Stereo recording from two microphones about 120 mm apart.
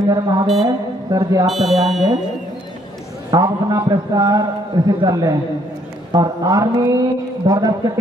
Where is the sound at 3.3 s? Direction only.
30° right (ahead or behind).